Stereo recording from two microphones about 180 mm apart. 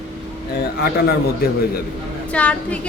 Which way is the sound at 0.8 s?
60° left (ahead or behind).